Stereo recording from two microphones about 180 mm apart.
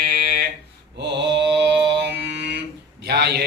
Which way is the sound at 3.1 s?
65° right (ahead or behind).